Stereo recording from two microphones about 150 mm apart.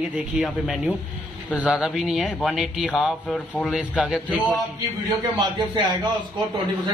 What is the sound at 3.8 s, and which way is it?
Speech, 5° right (ahead or behind).